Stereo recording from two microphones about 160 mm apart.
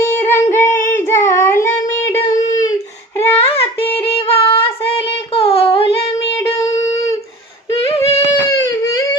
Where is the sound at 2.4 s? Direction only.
50° left (ahead or behind).